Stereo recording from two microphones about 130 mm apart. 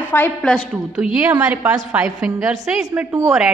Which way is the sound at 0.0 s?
15° left (ahead or behind).